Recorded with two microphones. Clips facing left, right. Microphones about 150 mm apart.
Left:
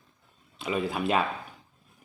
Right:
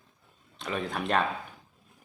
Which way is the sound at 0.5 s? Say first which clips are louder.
Left 3 dB; 5° left (ahead or behind).